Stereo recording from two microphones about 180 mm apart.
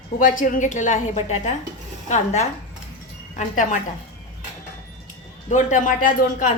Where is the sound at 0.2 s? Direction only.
50° left (ahead or behind).